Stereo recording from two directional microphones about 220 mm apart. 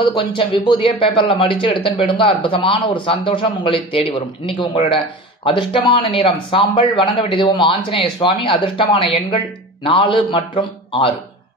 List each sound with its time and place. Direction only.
0.0 s speech: 20° left (ahead or behind)